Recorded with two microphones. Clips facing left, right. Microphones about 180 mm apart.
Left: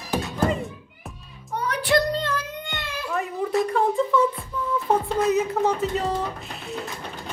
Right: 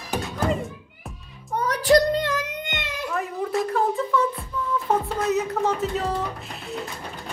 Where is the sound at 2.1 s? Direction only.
15° right (ahead or behind).